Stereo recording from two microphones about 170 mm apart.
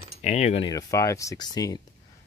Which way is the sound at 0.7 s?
20° left (ahead or behind).